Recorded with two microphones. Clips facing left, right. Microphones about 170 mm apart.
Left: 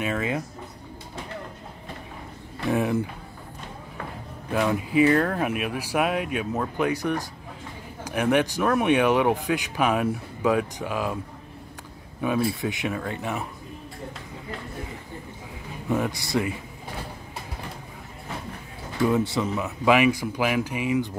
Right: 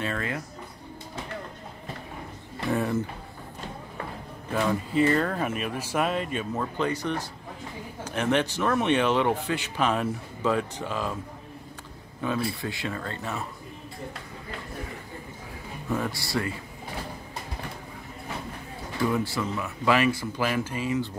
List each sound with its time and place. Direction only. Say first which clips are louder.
0.0 s speech: left 4 dB; 15° left (ahead or behind)
2.7 s speech: left 3 dB; 10° left (ahead or behind)
4.5 s speech: left 2 dB; 10° left (ahead or behind)
12.2 s speech: left 4 dB; 15° left (ahead or behind)
15.9 s speech: left 4 dB; 20° left (ahead or behind)
19.0 s speech: left 4 dB; 20° left (ahead or behind)